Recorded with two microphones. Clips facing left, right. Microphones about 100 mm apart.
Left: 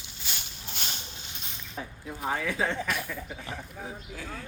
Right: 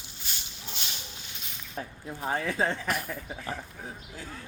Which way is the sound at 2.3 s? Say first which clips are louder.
Right 1 dB; 40° right (ahead or behind).